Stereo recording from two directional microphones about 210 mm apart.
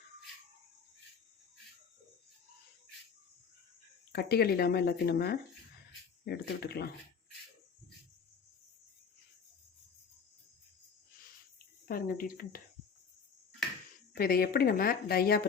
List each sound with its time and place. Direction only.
4.1 s speech: 50° left (ahead or behind)
11.9 s speech: 45° left (ahead or behind)
14.2 s speech: 45° left (ahead or behind)